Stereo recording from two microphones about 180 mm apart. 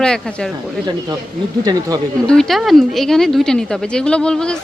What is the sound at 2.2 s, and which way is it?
Speech, 5° left (ahead or behind).